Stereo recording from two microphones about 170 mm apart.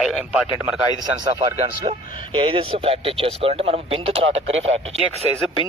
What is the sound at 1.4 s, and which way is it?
Speech, 25° right (ahead or behind).